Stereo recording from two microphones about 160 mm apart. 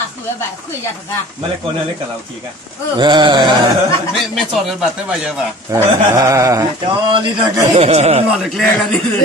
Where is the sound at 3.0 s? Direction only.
30° right (ahead or behind).